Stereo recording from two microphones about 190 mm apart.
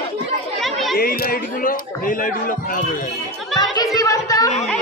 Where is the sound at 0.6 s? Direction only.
Centre (ahead or behind).